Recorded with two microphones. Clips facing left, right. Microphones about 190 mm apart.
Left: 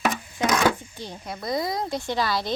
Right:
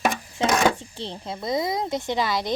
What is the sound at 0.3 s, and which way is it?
Speech, 25° right (ahead or behind).